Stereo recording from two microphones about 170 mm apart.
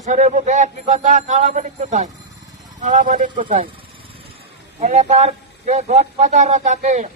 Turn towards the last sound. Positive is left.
turn(degrees=-45)  # may be behind; listen again after turning